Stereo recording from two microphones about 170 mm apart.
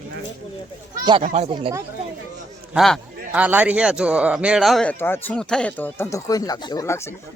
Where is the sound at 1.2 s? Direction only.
40° right (ahead or behind).